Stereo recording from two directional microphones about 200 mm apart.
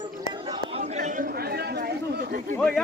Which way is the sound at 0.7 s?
35° right (ahead or behind).